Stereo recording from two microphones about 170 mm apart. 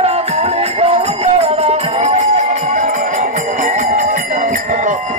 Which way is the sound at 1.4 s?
40° right (ahead or behind).